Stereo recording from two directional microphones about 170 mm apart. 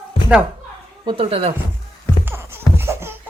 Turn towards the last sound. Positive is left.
turn(degrees=-15)  # may be behind; listen again after turning